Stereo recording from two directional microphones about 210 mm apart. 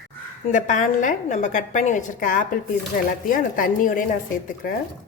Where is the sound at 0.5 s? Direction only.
35° left (ahead or behind).